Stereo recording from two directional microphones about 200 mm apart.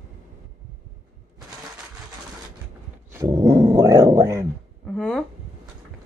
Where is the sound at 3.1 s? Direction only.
20° right (ahead or behind).